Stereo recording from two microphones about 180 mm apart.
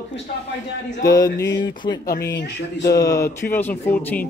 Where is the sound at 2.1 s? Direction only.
60° left (ahead or behind).